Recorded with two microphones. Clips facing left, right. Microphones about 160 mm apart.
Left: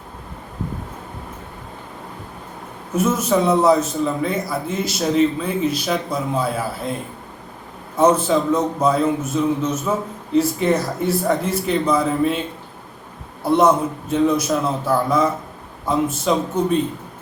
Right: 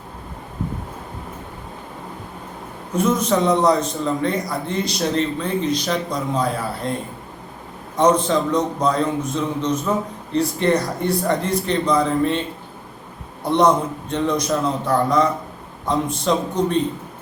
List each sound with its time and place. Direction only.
2.9 s a man's voice: 5° left (ahead or behind)
7.9 s a man's voice: 5° left (ahead or behind)
13.4 s a man's voice: 5° left (ahead or behind)